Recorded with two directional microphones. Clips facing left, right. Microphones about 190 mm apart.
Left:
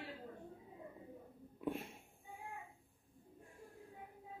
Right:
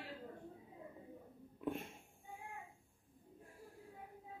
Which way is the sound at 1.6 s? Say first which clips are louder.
Even; centre (ahead or behind).